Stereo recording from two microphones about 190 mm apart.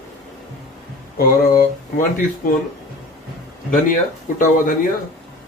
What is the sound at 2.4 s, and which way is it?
Speech, 45° left (ahead or behind).